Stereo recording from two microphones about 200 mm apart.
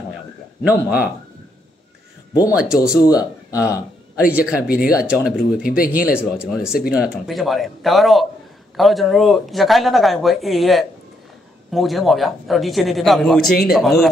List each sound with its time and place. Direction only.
0.7 s speech: 5° right (ahead or behind)
2.5 s speech: 5° right (ahead or behind)
4.2 s speech: 5° right (ahead or behind)
4.6 s speech: 50° left (ahead or behind)
4.9 s speech: 5° right (ahead or behind)
5.6 s speech: 45° left (ahead or behind)
6.3 s speech: 5° right (ahead or behind)